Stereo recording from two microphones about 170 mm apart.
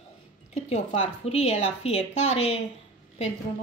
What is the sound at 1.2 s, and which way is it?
Speech, 40° left (ahead or behind).